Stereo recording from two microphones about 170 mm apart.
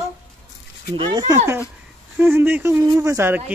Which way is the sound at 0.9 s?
25° right (ahead or behind).